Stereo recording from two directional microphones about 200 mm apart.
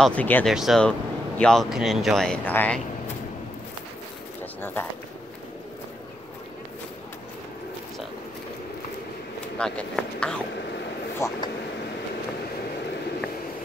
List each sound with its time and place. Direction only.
0.0 s speech: 5° left (ahead or behind)
9.6 s speech: 5° left (ahead or behind)
11.1 s speech: 15° left (ahead or behind)